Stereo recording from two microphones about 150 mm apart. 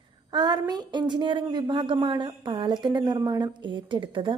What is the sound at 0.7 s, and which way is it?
A woman's voice, 30° right (ahead or behind).